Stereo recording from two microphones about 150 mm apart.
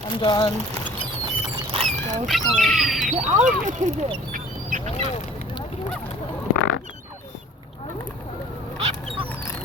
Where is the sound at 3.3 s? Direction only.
55° right (ahead or behind).